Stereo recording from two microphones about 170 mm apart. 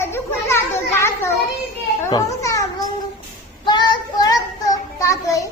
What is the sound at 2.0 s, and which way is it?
Children playing, 20° left (ahead or behind).